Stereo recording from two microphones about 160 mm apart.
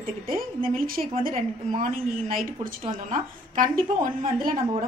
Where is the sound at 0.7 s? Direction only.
65° right (ahead or behind).